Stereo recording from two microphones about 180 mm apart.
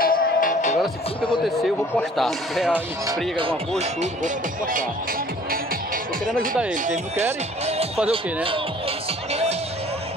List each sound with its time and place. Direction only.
0.0 s music: 50° left (ahead or behind)
1.4 s speech: centre (ahead or behind)
3.3 s speech: 35° right (ahead or behind)
6.7 s speech: 40° right (ahead or behind)
7.6 s music: 35° right (ahead or behind)
9.3 s music: 35° right (ahead or behind)